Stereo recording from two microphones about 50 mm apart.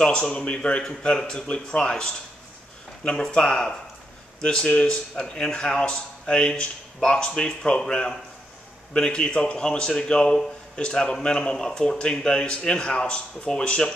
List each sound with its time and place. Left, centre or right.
0.0 s a man's voice: centre